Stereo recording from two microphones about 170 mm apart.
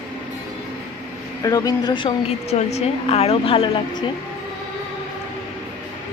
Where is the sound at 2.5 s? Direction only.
40° left (ahead or behind).